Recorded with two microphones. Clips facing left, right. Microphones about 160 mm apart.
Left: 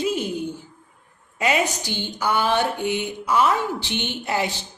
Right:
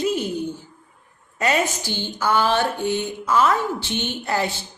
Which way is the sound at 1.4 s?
15° left (ahead or behind).